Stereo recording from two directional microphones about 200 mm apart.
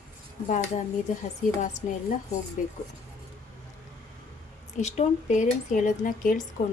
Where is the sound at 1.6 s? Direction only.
40° left (ahead or behind).